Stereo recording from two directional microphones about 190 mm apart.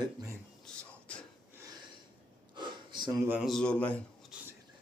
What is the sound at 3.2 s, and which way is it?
Speech, 5° right (ahead or behind).